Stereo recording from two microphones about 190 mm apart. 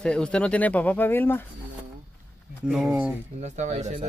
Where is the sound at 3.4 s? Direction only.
35° right (ahead or behind).